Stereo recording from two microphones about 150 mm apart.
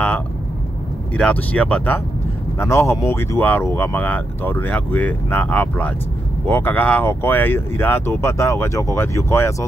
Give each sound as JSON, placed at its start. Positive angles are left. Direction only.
{"t": 1.1, "sound": "speech", "side_deg": 10}